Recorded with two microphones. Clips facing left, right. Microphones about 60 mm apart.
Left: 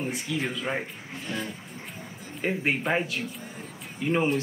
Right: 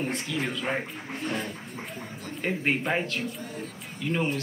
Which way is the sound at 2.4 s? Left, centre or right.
Centre.